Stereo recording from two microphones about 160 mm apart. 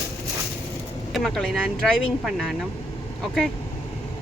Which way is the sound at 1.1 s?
Centre (ahead or behind).